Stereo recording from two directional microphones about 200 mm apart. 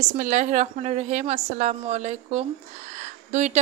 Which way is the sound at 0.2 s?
40° right (ahead or behind).